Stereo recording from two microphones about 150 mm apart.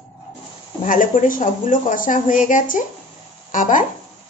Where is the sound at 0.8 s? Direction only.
65° left (ahead or behind).